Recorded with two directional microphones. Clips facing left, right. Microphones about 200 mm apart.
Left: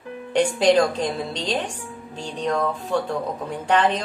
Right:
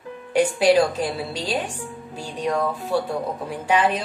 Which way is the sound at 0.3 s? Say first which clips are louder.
Even; 5° right (ahead or behind).